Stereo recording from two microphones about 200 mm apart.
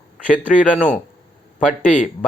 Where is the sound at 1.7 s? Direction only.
40° left (ahead or behind).